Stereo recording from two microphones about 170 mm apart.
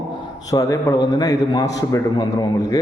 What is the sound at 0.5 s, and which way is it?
A man's voice, 20° left (ahead or behind).